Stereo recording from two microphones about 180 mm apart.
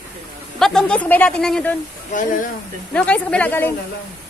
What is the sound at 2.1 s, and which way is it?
Speech, 45° left (ahead or behind).